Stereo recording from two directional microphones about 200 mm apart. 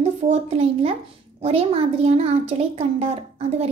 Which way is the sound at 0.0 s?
30° right (ahead or behind).